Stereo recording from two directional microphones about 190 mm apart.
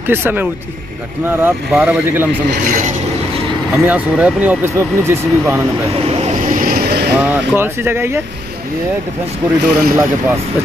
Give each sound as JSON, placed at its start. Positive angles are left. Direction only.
{"t": 0.1, "sound": "speech", "side_deg": -10}
{"t": 3.7, "sound": "speech", "side_deg": -5}
{"t": 5.9, "sound": "vehicle", "side_deg": -30}
{"t": 7.2, "sound": "speech", "side_deg": -10}
{"t": 9.7, "sound": "speech", "side_deg": -5}